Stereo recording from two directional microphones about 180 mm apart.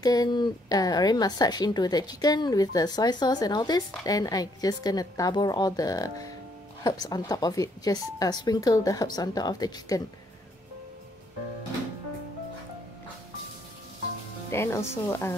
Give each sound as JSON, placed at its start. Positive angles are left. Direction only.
{"t": 0.0, "sound": "speech", "side_deg": 20}
{"t": 14.5, "sound": "speech", "side_deg": 15}